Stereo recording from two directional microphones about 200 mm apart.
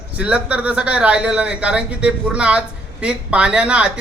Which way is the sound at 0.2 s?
5° right (ahead or behind).